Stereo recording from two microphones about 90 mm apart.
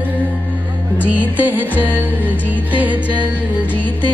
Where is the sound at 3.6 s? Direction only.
20° left (ahead or behind).